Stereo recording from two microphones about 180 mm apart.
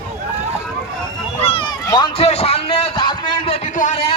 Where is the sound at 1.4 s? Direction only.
35° left (ahead or behind).